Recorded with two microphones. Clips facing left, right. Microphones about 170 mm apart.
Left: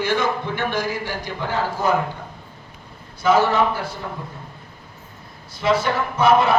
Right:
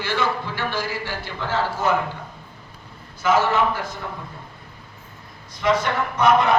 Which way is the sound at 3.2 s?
35° left (ahead or behind).